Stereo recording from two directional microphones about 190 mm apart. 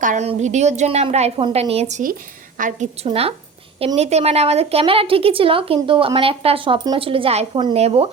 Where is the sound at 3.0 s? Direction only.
30° right (ahead or behind).